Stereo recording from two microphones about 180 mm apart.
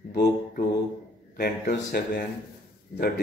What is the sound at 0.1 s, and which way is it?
Mantra, 60° left (ahead or behind).